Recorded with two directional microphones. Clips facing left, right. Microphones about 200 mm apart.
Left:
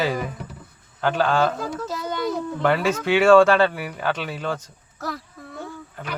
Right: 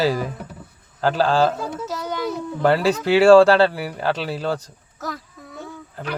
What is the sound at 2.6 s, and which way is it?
Speech, 35° right (ahead or behind).